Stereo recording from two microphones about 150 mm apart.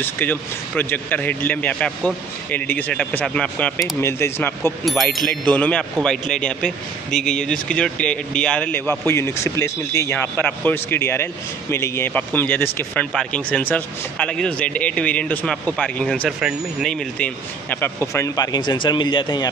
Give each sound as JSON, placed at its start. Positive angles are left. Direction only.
{"t": 0.0, "sound": "a man's voice", "side_deg": 10}
{"t": 4.8, "sound": "a man's voice", "side_deg": 5}
{"t": 17.2, "sound": "speech", "side_deg": 15}